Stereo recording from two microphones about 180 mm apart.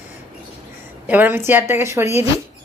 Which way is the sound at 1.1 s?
10° right (ahead or behind).